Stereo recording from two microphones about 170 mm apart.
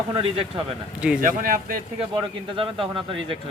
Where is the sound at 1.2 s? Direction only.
55° right (ahead or behind).